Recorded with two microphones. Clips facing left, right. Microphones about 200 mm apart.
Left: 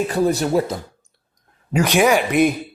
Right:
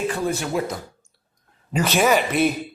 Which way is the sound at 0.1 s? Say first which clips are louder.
Left 6 dB; 40° left (ahead or behind).